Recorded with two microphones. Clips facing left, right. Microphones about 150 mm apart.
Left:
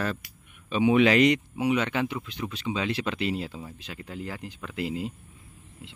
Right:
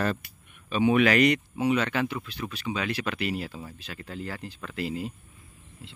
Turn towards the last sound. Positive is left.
turn(degrees=20)  # may be behind; listen again after turning